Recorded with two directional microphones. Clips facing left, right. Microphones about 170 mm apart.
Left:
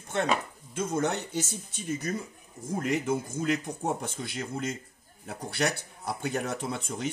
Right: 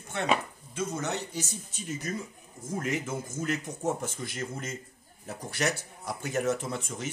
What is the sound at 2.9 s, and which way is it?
Speech, 60° left (ahead or behind).